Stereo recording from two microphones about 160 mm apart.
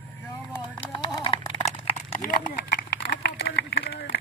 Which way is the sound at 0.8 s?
30° left (ahead or behind).